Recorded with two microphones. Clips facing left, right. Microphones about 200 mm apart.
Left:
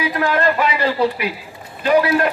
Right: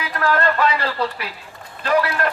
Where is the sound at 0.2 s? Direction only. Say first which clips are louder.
Even; 15° left (ahead or behind).